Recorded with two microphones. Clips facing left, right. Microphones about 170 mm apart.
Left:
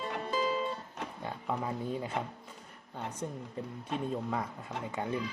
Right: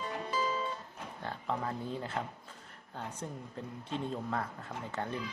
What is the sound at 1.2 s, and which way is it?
Speech, 10° left (ahead or behind).